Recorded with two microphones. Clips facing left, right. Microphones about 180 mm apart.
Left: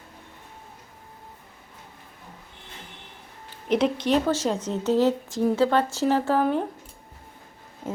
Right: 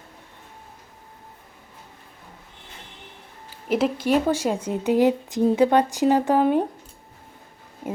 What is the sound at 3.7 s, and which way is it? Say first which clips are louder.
A woman's voice: right 1 dB; 5° right (ahead or behind).